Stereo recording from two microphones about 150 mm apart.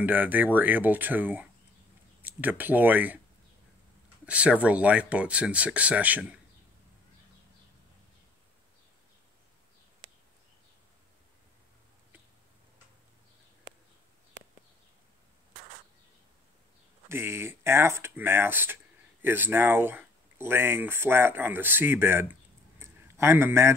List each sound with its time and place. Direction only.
0.0 s speech: 10° right (ahead or behind)
4.3 s speech: 10° right (ahead or behind)
17.1 s speech: 15° right (ahead or behind)